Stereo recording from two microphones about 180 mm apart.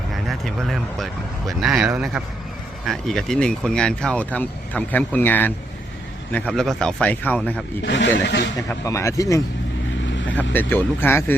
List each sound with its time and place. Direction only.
0.3 s speech: centre (ahead or behind)
7.8 s a man's voice: 75° left (ahead or behind)
8.8 s speech: 15° left (ahead or behind)